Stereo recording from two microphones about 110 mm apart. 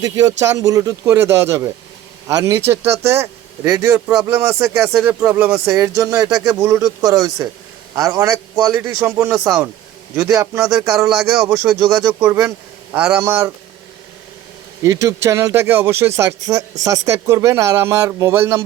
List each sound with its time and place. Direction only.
0.0 s a man's voice: 35° right (ahead or behind)
13.0 s speech: 10° right (ahead or behind)
13.2 s speech: 20° right (ahead or behind)
14.8 s speech: 30° right (ahead or behind)